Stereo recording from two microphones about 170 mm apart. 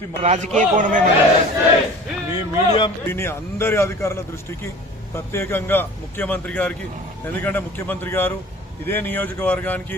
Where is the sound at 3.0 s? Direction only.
15° left (ahead or behind).